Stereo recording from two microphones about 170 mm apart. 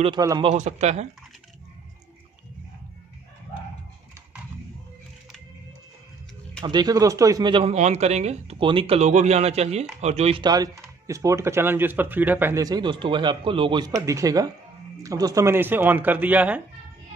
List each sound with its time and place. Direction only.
0.0 s speech: 25° right (ahead or behind)
0.5 s a man's voice: 40° right (ahead or behind)
6.6 s a man's voice: 25° right (ahead or behind)
10.4 s speech: 20° right (ahead or behind)